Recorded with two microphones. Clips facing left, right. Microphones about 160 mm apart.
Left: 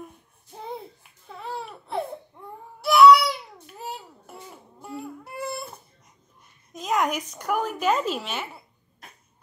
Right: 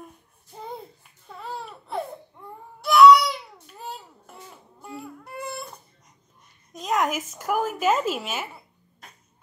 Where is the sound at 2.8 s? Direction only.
5° left (ahead or behind).